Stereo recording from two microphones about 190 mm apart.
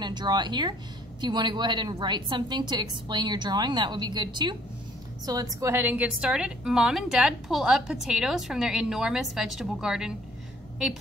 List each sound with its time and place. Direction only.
0.0 s a woman's voice: 20° right (ahead or behind); by 10.1 s 5° right (ahead or behind)